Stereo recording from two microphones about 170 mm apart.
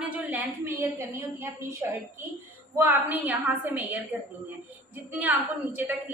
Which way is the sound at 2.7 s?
10° right (ahead or behind).